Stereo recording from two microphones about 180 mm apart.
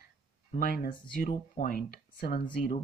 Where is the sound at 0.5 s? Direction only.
55° left (ahead or behind).